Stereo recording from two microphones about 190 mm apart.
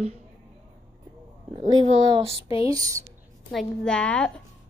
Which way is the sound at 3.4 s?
Centre (ahead or behind).